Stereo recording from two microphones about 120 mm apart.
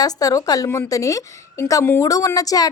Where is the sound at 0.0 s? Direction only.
30° left (ahead or behind).